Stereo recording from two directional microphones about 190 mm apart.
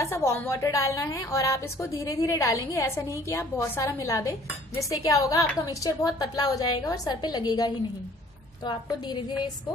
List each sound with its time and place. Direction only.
0.0 s a woman's voice: 15° left (ahead or behind)